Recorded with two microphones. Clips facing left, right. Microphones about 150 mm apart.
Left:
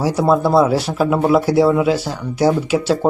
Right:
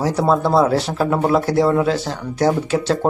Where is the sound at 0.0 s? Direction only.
5° left (ahead or behind).